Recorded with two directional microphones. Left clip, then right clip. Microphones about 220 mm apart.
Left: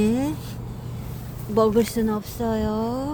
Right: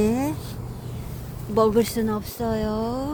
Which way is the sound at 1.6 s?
Centre (ahead or behind).